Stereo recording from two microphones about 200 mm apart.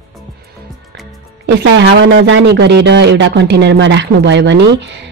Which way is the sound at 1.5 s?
60° right (ahead or behind).